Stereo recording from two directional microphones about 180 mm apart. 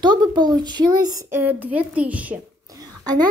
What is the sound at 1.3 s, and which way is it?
A woman's voice, 10° right (ahead or behind).